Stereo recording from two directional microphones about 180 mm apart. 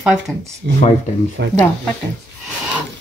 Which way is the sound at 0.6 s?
70° right (ahead or behind).